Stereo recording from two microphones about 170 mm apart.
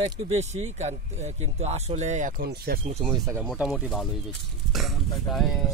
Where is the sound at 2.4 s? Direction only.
65° right (ahead or behind).